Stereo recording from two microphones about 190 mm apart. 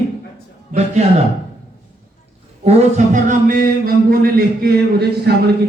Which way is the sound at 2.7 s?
40° right (ahead or behind).